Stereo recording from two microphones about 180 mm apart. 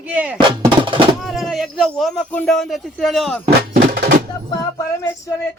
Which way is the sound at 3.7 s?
60° right (ahead or behind).